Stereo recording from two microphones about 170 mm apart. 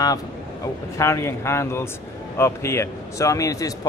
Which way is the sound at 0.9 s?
15° left (ahead or behind).